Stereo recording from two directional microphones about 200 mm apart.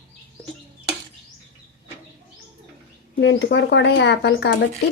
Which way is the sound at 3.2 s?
60° left (ahead or behind).